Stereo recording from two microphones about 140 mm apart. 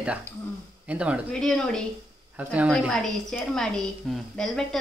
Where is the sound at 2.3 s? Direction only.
10° right (ahead or behind).